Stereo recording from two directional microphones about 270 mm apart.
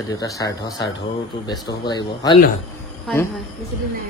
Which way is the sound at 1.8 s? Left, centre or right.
Centre.